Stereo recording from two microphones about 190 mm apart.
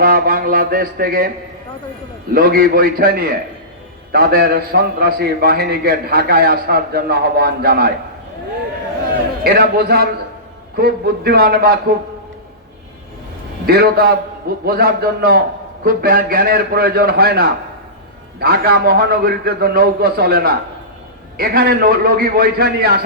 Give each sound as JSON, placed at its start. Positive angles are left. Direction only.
{"t": 0.0, "sound": "a man's voice", "side_deg": -50}
{"t": 2.3, "sound": "a man's voice", "side_deg": -50}
{"t": 9.4, "sound": "a man's voice", "side_deg": -55}
{"t": 13.7, "sound": "a man's voice", "side_deg": -55}